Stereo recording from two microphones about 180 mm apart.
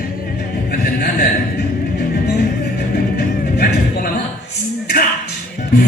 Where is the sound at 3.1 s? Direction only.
60° left (ahead or behind).